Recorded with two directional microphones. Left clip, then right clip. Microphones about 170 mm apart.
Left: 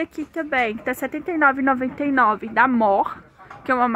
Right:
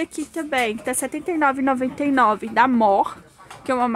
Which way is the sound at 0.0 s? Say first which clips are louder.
Even; 25° right (ahead or behind).